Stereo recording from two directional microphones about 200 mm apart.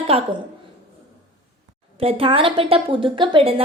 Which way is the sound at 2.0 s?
30° right (ahead or behind).